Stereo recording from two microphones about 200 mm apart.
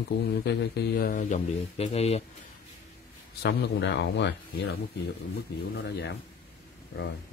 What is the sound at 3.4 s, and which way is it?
Speech, 55° left (ahead or behind).